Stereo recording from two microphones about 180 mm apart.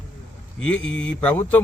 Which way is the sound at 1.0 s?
5° left (ahead or behind).